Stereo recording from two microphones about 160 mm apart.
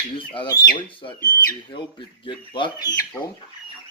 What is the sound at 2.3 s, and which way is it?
Speech, 30° left (ahead or behind).